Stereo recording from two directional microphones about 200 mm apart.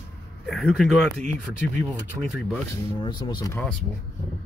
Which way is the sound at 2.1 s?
15° right (ahead or behind).